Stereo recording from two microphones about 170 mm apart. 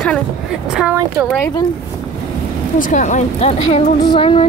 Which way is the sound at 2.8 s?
45° left (ahead or behind).